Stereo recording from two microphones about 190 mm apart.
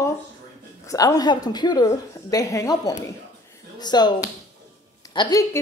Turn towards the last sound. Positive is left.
turn(degrees=20)  # may be behind; listen again after turning